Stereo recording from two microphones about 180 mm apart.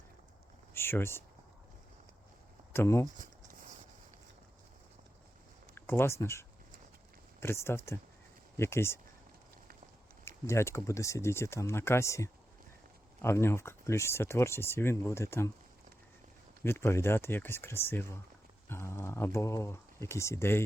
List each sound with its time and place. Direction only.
0.7 s speech: 15° left (ahead or behind)
2.7 s speech: 15° left (ahead or behind)
3.2 s a sound: 45° right (ahead or behind)
5.7 s speech: 10° left (ahead or behind)
10.2 s speech: 15° left (ahead or behind)
16.6 s speech: 15° left (ahead or behind)